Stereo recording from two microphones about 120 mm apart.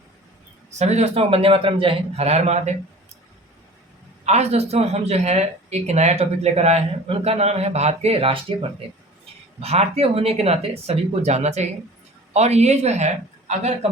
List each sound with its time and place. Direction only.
0.7 s a man's voice: 70° right (ahead or behind)
4.3 s a man's voice: 65° right (ahead or behind)
9.6 s a man's voice: 60° right (ahead or behind)